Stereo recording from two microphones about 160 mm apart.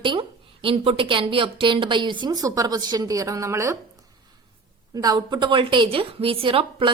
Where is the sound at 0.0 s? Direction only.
30° right (ahead or behind).